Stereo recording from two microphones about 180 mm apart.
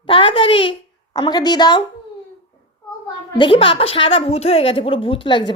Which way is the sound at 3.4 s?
30° left (ahead or behind).